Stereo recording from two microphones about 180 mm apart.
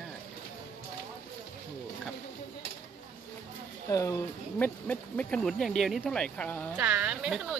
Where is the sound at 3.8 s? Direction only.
15° left (ahead or behind).